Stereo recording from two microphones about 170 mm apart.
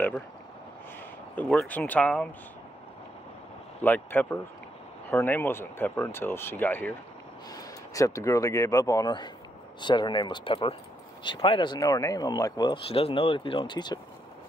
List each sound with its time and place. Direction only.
1.3 s speech: 10° left (ahead or behind)
3.8 s speech: 10° left (ahead or behind); by 13.9 s 25° left (ahead or behind)